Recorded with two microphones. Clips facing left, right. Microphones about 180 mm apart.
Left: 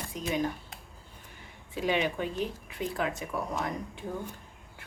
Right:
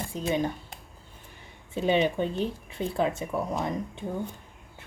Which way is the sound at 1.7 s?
30° right (ahead or behind).